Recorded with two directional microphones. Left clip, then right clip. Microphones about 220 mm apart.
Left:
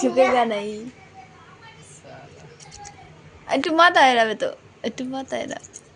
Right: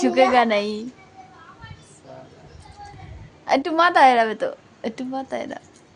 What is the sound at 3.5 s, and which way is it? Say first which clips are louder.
A woman's voice: left 1 dB; 5° left (ahead or behind).